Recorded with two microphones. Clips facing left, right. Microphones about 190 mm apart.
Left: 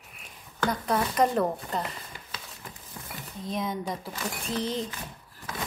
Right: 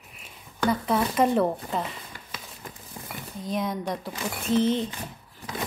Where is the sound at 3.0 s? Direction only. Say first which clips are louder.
Right 2 dB; 20° right (ahead or behind).